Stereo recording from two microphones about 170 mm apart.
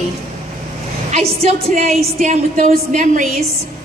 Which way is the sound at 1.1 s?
40° right (ahead or behind).